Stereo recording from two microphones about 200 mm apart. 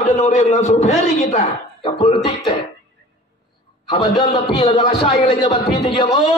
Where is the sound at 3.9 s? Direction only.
25° left (ahead or behind).